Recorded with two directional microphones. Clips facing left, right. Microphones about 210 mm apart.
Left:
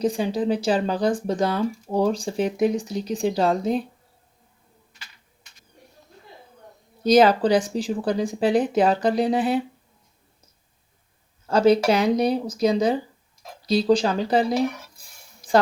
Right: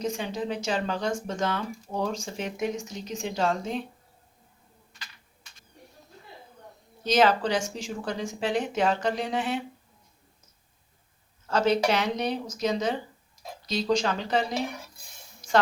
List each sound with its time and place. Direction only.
0.0 s speech: 35° left (ahead or behind)
7.0 s speech: 35° left (ahead or behind)
11.4 s speech: 35° left (ahead or behind)